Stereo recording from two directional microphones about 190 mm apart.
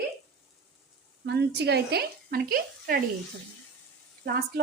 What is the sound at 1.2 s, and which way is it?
Speech, 65° right (ahead or behind).